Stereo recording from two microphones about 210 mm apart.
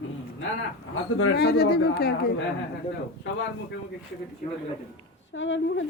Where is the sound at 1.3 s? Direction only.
50° left (ahead or behind).